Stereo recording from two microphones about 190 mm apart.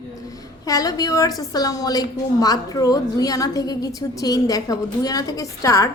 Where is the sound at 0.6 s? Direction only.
20° left (ahead or behind).